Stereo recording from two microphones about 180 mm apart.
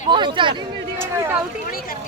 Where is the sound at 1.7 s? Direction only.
55° left (ahead or behind).